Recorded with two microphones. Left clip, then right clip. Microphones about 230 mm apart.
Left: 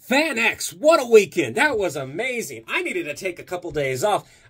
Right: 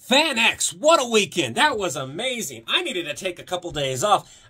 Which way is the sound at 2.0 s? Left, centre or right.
Right.